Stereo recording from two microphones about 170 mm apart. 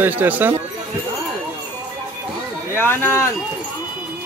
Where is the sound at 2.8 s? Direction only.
10° left (ahead or behind).